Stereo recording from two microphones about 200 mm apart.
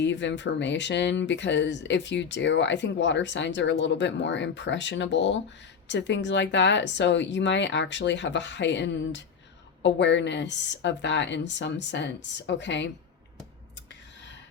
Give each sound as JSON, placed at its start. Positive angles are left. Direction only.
{"t": 0.0, "sound": "speech", "side_deg": 65}